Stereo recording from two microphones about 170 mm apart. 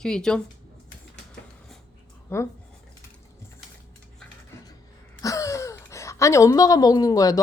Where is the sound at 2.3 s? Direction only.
15° left (ahead or behind).